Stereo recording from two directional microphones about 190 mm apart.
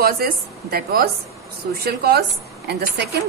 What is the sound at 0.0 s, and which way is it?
A woman's voice, 55° right (ahead or behind).